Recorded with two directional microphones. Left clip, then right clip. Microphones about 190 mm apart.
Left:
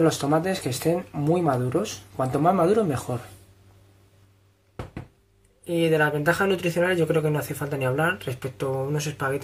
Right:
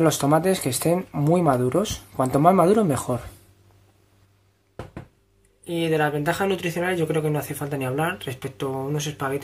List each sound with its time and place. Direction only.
0.0 s speech: 25° right (ahead or behind)
5.7 s speech: 5° right (ahead or behind)